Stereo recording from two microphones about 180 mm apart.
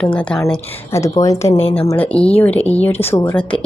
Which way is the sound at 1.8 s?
20° left (ahead or behind).